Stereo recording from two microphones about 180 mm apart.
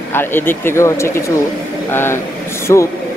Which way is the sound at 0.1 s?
10° left (ahead or behind).